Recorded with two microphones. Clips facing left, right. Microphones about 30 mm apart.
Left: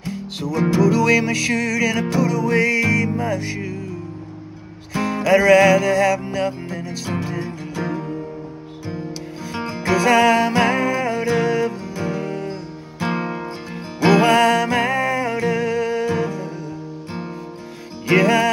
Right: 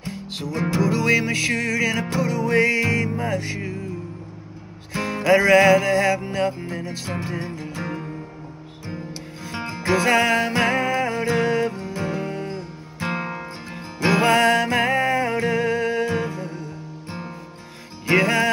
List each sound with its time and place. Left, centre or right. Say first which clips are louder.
0.0 s music: left 3 dB; right; by 3.7 s centre
5.1 s music: left 2 dB; centre
6.7 s music: left 2 dB; right
9.8 s music: left 3 dB; centre
10.5 s music: left 3 dB; centre
10.8 s music: left 2 dB; centre
13.0 s music: left 3 dB; centre
14.0 s music: left 3 dB; right
18.0 s music: left 3 dB; centre